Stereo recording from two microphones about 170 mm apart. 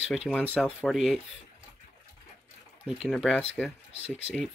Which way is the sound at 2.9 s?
Centre (ahead or behind).